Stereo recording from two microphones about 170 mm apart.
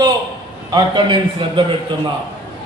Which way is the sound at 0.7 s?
25° right (ahead or behind).